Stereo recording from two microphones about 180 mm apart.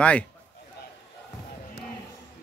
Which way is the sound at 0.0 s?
5° left (ahead or behind).